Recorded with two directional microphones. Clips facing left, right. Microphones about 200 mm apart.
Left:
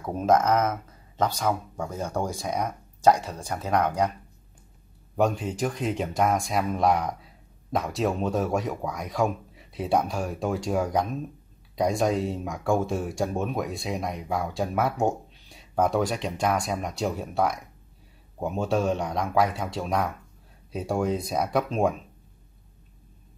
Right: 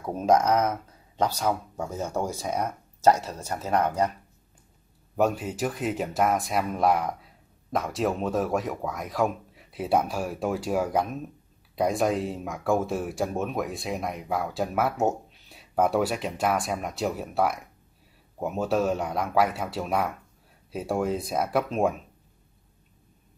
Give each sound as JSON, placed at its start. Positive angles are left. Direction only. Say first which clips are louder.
{"t": 0.0, "sound": "speech", "louder": "even", "side_deg": -10}
{"t": 5.1, "sound": "speech", "louder": "even", "side_deg": -5}